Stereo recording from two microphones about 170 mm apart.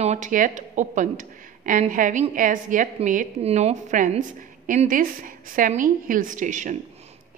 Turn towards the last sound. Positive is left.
turn(degrees=-45)  # may be behind; listen again after turning